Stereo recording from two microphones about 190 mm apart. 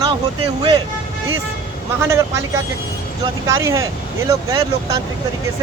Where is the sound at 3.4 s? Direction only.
15° right (ahead or behind).